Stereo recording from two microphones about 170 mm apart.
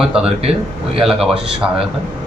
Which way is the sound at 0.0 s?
5° right (ahead or behind).